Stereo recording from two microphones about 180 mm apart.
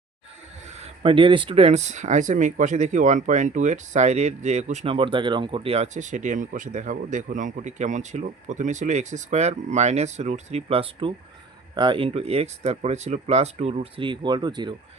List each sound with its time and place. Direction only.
0.8 s speech: 30° right (ahead or behind)